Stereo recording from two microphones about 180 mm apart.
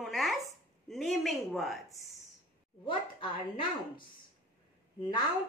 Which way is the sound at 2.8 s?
30° left (ahead or behind).